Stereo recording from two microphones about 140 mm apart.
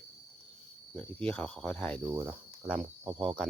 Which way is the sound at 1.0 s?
10° left (ahead or behind).